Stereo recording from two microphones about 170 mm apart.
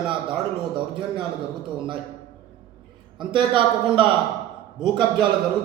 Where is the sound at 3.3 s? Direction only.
30° right (ahead or behind).